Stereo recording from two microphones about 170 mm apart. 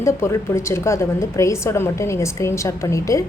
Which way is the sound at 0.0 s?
15° left (ahead or behind).